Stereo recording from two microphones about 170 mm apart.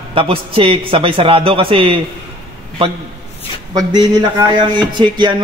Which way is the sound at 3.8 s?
20° right (ahead or behind).